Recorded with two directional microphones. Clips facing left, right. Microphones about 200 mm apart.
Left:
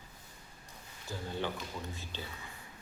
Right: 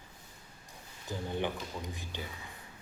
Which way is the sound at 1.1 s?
15° right (ahead or behind).